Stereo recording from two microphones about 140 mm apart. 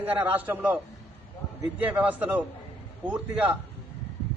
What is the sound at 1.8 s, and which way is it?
A man's voice, 10° right (ahead or behind).